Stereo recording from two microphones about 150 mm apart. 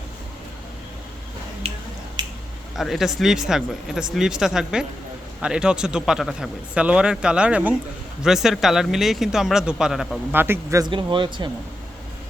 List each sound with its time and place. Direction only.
1.6 s finger snapping: 40° right (ahead or behind)
2.7 s speech: centre (ahead or behind)
10.3 s speech: 15° right (ahead or behind)
10.8 s speech: 30° right (ahead or behind)